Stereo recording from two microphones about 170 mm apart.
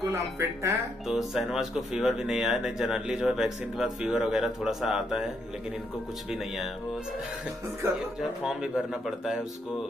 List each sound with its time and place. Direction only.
0.0 s speech: 15° right (ahead or behind)
1.0 s speech: centre (ahead or behind)
9.0 s speech: centre (ahead or behind)